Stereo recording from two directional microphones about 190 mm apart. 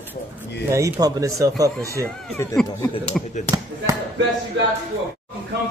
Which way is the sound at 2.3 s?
15° left (ahead or behind).